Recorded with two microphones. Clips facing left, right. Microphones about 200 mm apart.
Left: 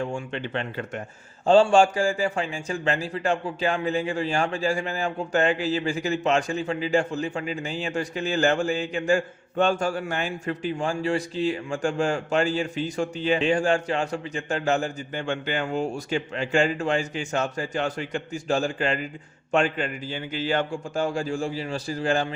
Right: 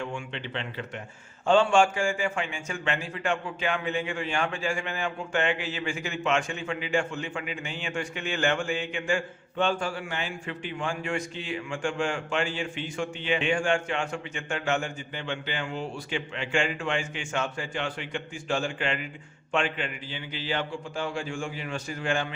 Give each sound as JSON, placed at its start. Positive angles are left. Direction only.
{"t": 0.0, "sound": "speech", "side_deg": 40}
{"t": 1.5, "sound": "a man's voice", "side_deg": 35}